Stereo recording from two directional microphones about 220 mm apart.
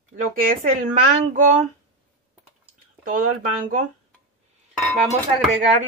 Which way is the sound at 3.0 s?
40° right (ahead or behind).